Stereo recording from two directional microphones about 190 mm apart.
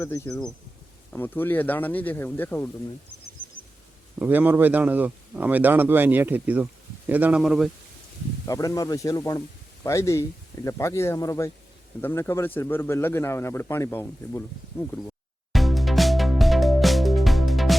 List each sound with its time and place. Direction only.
0.0 s speech: 15° left (ahead or behind)
4.2 s speech: 10° right (ahead or behind)
8.4 s speech: 15° left (ahead or behind)
15.5 s music: centre (ahead or behind)